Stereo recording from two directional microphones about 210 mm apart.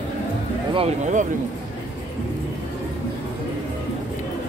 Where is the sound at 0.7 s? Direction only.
30° right (ahead or behind).